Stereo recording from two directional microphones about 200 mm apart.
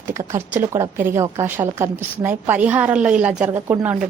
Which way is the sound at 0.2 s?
15° right (ahead or behind).